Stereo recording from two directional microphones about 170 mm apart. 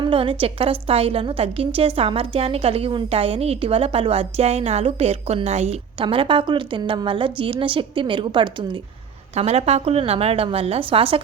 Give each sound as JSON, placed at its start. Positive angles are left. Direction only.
{"t": 0.0, "sound": "a woman's voice", "side_deg": -30}